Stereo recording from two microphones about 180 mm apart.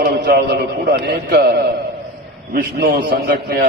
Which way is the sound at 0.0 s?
60° right (ahead or behind).